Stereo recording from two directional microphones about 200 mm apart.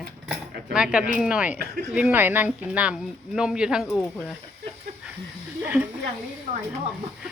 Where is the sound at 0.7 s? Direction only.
5° right (ahead or behind).